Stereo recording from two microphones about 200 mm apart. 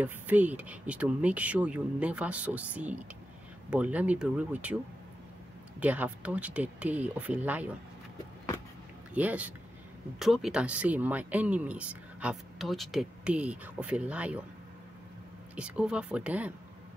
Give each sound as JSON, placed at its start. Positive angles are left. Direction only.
{"t": 0.0, "sound": "speech", "side_deg": -10}
{"t": 5.8, "sound": "speech", "side_deg": -10}
{"t": 9.1, "sound": "speech", "side_deg": -10}
{"t": 15.5, "sound": "speech", "side_deg": -5}